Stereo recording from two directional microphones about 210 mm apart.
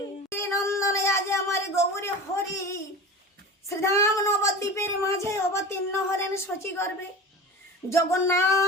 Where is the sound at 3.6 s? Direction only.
15° left (ahead or behind).